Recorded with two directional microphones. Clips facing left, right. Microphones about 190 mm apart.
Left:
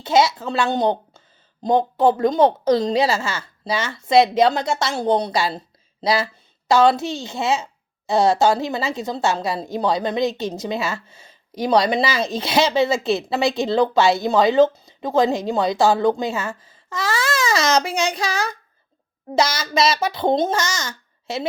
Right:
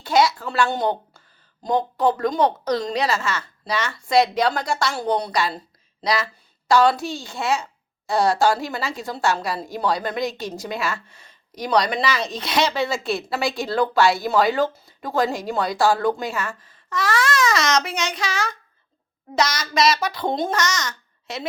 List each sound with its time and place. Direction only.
0.0 s a woman's voice: 25° left (ahead or behind)